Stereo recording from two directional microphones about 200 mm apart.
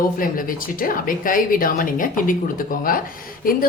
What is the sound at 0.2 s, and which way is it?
A woman's voice, 45° left (ahead or behind).